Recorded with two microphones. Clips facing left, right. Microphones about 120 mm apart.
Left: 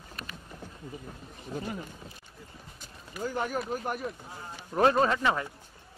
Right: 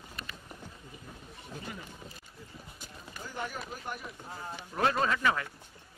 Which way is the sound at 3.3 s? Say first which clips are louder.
Left 8 dB; 50° left (ahead or behind).